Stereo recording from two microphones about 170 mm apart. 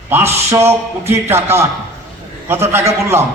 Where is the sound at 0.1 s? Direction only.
15° right (ahead or behind).